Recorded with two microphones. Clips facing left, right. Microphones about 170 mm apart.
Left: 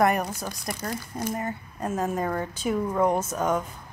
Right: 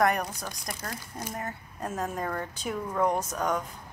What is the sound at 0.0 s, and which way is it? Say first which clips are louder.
A woman's voice: left 3 dB; 5° left (ahead or behind).